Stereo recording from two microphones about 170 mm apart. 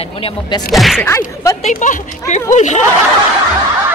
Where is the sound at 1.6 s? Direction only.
45° left (ahead or behind).